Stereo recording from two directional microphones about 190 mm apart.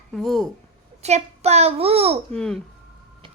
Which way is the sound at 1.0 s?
35° right (ahead or behind).